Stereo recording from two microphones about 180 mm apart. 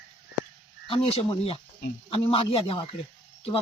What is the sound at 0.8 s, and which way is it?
A man's voice, 30° left (ahead or behind).